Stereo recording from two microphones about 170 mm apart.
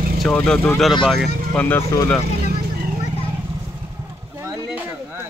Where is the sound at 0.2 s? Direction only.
5° left (ahead or behind).